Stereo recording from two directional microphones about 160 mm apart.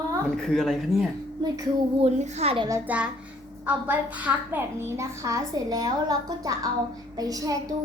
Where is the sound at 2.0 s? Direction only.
40° right (ahead or behind).